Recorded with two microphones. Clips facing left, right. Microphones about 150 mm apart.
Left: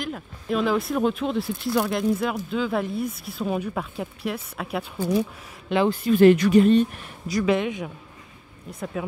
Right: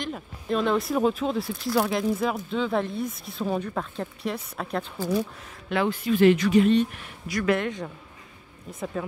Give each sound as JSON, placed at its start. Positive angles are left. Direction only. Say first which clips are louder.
{"t": 0.0, "sound": "speech", "louder": "left 1 dB", "side_deg": 0}
{"t": 5.9, "sound": "speech", "louder": "left 4 dB", "side_deg": 40}
{"t": 7.4, "sound": "a man's voice", "louder": "left 1 dB", "side_deg": 15}
{"t": 8.7, "sound": "speech", "louder": "even", "side_deg": -5}